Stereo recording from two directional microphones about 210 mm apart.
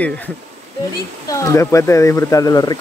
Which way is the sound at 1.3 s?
15° left (ahead or behind).